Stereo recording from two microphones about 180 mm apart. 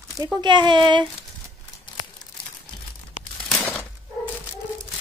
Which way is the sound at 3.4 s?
10° left (ahead or behind).